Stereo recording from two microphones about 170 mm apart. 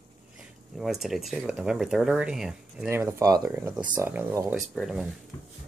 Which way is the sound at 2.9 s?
15° right (ahead or behind).